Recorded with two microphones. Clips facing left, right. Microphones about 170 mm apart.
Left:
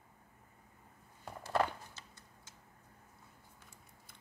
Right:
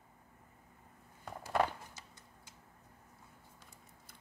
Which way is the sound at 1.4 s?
10° right (ahead or behind).